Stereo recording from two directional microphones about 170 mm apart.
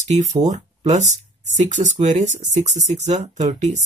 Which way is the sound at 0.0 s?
45° right (ahead or behind).